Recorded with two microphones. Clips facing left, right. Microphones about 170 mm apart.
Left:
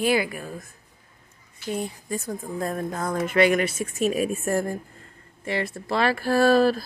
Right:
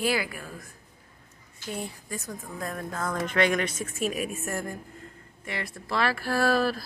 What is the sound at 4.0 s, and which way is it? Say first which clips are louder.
A woman's voice: left 7 dB; 30° left (ahead or behind).